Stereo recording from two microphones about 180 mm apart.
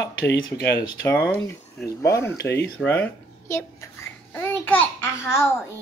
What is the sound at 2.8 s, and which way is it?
Babbling, 10° left (ahead or behind).